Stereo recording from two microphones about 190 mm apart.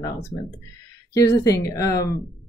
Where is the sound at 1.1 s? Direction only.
15° left (ahead or behind).